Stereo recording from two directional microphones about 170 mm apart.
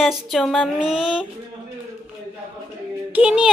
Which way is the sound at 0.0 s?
Centre (ahead or behind).